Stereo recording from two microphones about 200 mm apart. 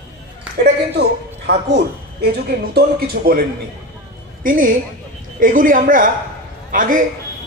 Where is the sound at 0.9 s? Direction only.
55° right (ahead or behind).